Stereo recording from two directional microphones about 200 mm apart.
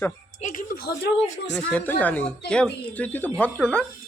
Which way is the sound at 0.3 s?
40° left (ahead or behind).